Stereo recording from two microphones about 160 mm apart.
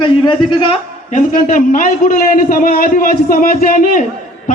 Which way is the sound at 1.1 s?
55° left (ahead or behind).